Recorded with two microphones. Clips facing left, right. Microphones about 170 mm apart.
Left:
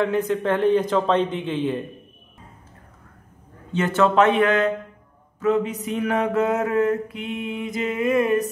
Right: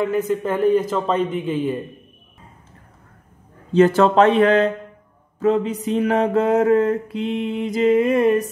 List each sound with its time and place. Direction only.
0.0 s a man's voice: 5° right (ahead or behind)
3.7 s mantra: 35° right (ahead or behind)